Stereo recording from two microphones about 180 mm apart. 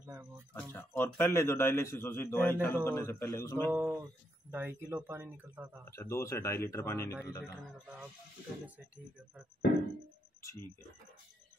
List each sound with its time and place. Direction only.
0.0 s speech: 15° right (ahead or behind)
0.6 s a man's voice: 10° left (ahead or behind)
3.7 s speech: 10° right (ahead or behind)
5.9 s a man's voice: 15° left (ahead or behind)
8.6 s speech: 10° right (ahead or behind)